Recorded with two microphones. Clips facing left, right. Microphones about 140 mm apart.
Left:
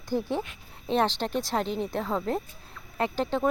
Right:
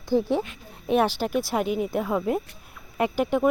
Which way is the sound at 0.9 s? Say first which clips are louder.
Right 3 dB; 10° right (ahead or behind).